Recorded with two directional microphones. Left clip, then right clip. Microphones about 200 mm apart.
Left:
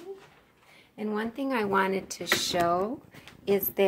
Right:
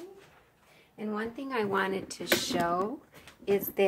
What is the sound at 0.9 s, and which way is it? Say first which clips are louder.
Speech: left 3 dB; 40° left (ahead or behind).